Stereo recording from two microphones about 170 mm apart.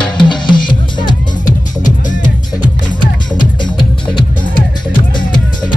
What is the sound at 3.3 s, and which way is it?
Music, 25° left (ahead or behind).